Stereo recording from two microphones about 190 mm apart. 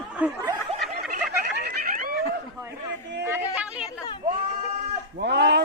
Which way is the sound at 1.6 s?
45° right (ahead or behind).